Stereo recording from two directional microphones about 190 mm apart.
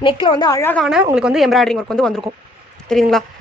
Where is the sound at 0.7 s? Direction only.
Centre (ahead or behind).